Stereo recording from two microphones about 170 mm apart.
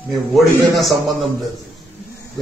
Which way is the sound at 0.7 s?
Centre (ahead or behind).